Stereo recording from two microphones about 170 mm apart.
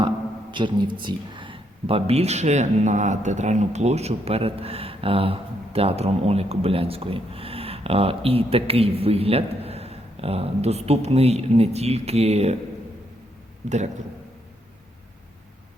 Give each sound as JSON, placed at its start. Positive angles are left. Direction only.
{"t": 0.5, "sound": "speech", "side_deg": -30}
{"t": 13.7, "sound": "a man's voice", "side_deg": -40}